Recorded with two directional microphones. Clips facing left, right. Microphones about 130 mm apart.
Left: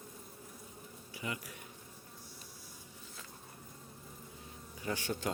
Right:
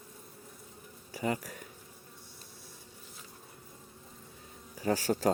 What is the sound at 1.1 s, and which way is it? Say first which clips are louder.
Speech: right 9 dB; 40° right (ahead or behind).